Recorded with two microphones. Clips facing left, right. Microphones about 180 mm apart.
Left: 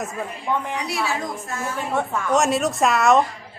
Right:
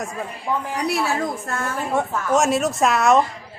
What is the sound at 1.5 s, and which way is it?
Speech, 60° right (ahead or behind).